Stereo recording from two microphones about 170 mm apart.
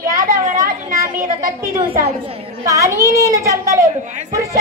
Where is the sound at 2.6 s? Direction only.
20° right (ahead or behind).